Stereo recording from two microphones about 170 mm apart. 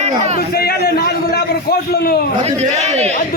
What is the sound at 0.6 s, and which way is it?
A man's voice, 65° left (ahead or behind).